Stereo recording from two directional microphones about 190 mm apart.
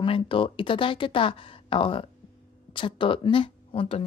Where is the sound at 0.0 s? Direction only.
25° left (ahead or behind).